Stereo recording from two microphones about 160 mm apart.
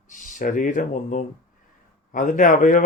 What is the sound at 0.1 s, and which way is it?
Speech, 50° left (ahead or behind).